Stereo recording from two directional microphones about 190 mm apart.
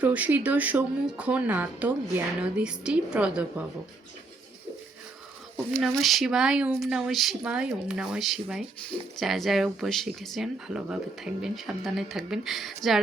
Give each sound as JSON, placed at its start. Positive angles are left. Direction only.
{"t": 0.0, "sound": "speech", "side_deg": -10}
{"t": 5.8, "sound": "speech", "side_deg": 0}